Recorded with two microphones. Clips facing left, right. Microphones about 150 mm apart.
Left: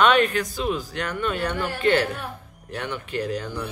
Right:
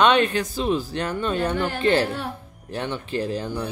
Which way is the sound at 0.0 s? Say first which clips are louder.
Right 1 dB; 25° right (ahead or behind).